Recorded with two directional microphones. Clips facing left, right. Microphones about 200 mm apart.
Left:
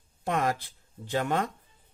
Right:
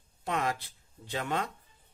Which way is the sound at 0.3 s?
45° left (ahead or behind).